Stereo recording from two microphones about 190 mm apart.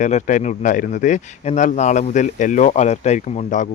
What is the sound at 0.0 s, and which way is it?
Speech, 40° left (ahead or behind).